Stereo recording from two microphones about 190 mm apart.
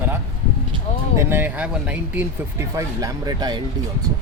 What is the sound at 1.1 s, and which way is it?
Speech, 10° right (ahead or behind).